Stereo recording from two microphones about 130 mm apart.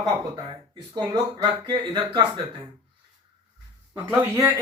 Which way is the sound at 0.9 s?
35° right (ahead or behind).